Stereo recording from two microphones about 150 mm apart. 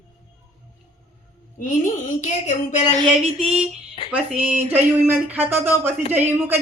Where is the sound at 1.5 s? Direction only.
65° left (ahead or behind).